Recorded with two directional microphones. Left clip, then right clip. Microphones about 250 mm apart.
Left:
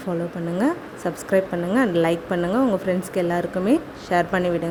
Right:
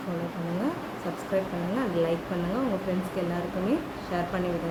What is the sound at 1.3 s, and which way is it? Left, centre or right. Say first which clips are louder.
Speech: left 8 dB; left.